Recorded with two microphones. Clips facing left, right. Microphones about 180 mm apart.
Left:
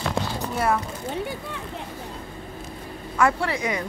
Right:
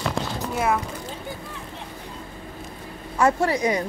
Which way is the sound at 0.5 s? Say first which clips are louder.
Even; 5° right (ahead or behind).